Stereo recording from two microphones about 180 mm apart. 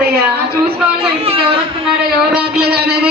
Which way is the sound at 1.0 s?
35° right (ahead or behind).